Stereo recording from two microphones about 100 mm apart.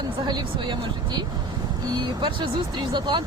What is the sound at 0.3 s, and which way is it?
Speech, 45° right (ahead or behind).